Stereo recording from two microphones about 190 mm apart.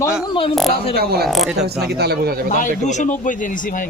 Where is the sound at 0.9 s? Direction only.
55° right (ahead or behind).